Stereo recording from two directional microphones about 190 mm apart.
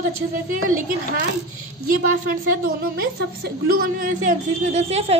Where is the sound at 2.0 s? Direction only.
50° right (ahead or behind).